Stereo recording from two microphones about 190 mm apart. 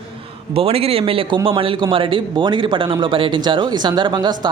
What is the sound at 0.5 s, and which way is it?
A man's voice, 30° right (ahead or behind).